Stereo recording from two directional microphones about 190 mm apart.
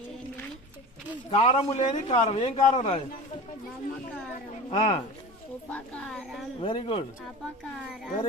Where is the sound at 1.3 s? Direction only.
30° left (ahead or behind).